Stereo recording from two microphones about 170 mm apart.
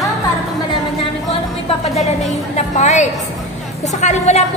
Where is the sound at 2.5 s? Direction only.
45° left (ahead or behind).